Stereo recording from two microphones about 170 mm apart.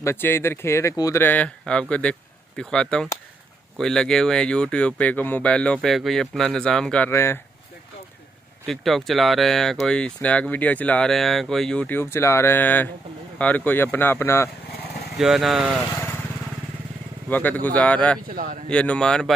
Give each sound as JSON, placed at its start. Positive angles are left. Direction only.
{"t": 0.0, "sound": "speech", "side_deg": 15}
{"t": 8.6, "sound": "speech", "side_deg": 0}
{"t": 15.1, "sound": "speech", "side_deg": 0}
{"t": 17.3, "sound": "speech", "side_deg": 10}
{"t": 18.3, "sound": "speech", "side_deg": -60}
{"t": 18.7, "sound": "speech", "side_deg": 5}